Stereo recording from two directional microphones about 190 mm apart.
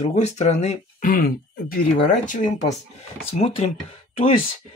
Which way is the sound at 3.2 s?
30° left (ahead or behind).